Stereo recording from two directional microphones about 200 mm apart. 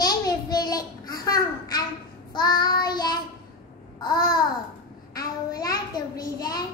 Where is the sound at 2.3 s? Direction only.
20° left (ahead or behind).